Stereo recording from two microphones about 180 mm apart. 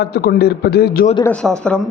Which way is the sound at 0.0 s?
60° left (ahead or behind).